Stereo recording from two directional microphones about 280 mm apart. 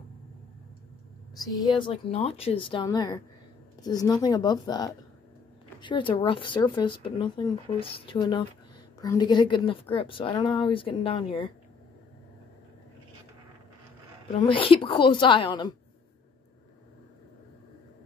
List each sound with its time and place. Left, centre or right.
1.6 s speech: centre
14.3 s speech: centre